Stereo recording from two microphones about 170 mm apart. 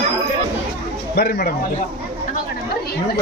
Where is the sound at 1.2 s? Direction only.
70° left (ahead or behind).